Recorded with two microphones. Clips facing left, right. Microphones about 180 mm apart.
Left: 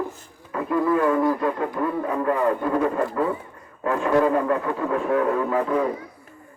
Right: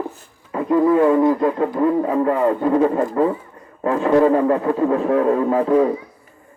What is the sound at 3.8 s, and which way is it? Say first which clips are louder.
A man's voice: right 5 dB; 30° right (ahead or behind).